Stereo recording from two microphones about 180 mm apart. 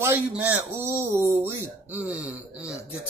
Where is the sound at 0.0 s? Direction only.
10° right (ahead or behind).